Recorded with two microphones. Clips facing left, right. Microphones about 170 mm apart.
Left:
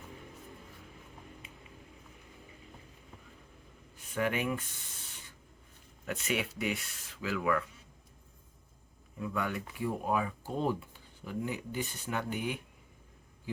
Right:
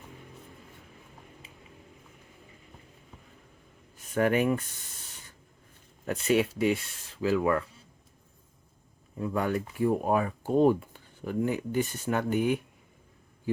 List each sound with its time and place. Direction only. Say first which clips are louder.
4.1 s speech: right 7 dB; 45° right (ahead or behind)
6.1 s speech: right 9 dB; 35° right (ahead or behind)
9.1 s speech: right 6 dB; 40° right (ahead or behind)